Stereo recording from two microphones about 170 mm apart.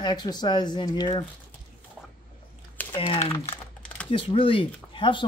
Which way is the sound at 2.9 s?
30° left (ahead or behind).